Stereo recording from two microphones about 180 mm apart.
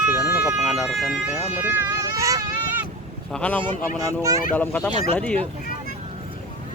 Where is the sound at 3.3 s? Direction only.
5° left (ahead or behind).